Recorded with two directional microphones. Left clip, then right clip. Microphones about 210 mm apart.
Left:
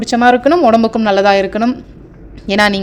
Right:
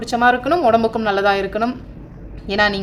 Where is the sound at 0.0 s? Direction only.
30° left (ahead or behind).